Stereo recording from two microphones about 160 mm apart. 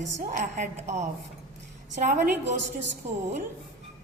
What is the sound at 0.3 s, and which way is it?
Speech, 55° right (ahead or behind).